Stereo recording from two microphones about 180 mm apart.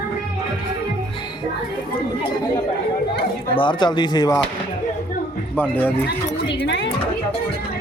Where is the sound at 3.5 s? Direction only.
25° left (ahead or behind).